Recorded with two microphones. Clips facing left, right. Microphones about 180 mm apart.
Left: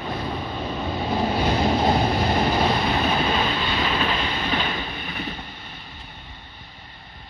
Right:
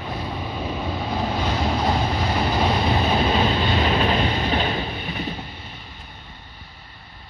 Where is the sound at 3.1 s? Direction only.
35° right (ahead or behind).